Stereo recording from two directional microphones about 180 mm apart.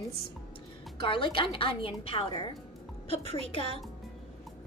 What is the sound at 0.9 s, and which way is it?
A woman's voice, 30° left (ahead or behind).